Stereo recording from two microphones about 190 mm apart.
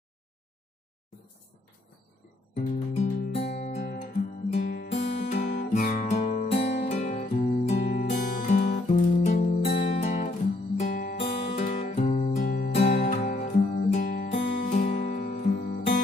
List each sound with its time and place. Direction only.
2.5 s music: 35° left (ahead or behind)
3.8 s guitar: 50° left (ahead or behind)
4.9 s music: 40° left (ahead or behind)
11.0 s music: 50° left (ahead or behind)
11.5 s music: 35° left (ahead or behind)
12.4 s music: 50° left (ahead or behind)